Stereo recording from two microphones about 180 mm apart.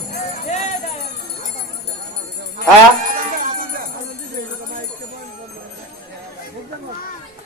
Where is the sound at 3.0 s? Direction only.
50° right (ahead or behind).